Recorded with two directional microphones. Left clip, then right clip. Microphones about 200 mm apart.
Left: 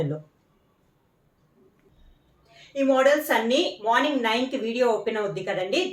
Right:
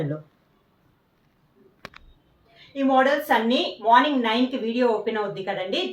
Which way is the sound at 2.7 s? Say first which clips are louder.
Even; 20° left (ahead or behind).